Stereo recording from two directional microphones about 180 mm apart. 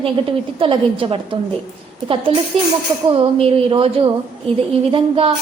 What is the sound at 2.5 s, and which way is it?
A woman's voice, 30° right (ahead or behind).